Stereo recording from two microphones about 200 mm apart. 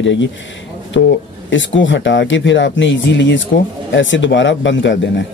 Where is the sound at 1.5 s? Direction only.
70° left (ahead or behind).